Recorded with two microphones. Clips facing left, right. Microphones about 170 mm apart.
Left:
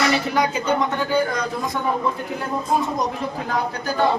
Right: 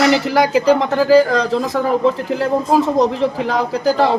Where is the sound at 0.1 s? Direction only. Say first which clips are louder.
Right 7 dB; 85° right.